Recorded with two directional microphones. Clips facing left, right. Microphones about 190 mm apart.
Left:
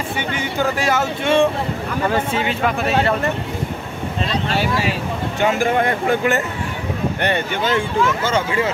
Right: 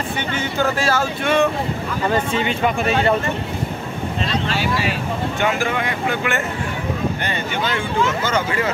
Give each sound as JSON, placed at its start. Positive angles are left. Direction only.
{"t": 0.3, "sound": "speech", "side_deg": 15}
{"t": 2.0, "sound": "speech", "side_deg": 5}
{"t": 5.6, "sound": "speech", "side_deg": 45}